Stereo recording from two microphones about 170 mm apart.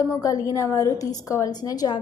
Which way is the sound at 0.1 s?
20° left (ahead or behind).